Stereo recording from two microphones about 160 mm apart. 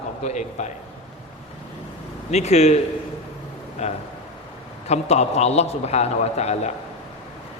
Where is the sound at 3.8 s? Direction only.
40° left (ahead or behind).